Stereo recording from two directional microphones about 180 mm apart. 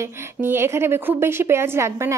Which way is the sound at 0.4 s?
15° right (ahead or behind).